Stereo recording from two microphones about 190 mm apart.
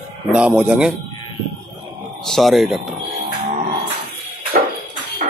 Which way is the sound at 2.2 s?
Centre (ahead or behind).